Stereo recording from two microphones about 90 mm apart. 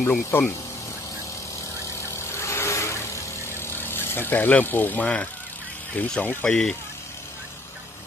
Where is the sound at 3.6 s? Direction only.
25° left (ahead or behind).